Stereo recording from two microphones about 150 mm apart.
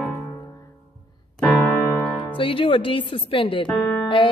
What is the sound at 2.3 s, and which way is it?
A woman's voice, 35° left (ahead or behind).